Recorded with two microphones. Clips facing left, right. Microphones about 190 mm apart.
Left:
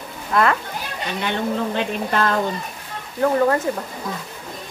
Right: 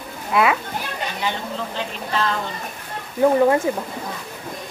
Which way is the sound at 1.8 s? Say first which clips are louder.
Left 4 dB; 55° left (ahead or behind).